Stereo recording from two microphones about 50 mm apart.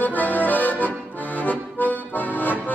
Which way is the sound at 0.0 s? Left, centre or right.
Left.